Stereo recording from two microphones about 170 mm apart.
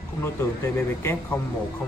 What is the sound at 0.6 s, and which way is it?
Speech, 15° left (ahead or behind).